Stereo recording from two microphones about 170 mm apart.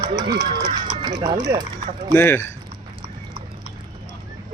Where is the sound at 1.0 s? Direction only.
25° right (ahead or behind).